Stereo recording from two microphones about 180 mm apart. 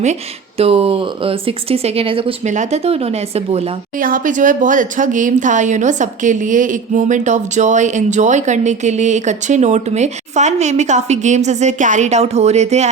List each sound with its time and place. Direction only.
0.0 s speech: 35° right (ahead or behind)
3.9 s speech: 50° right (ahead or behind)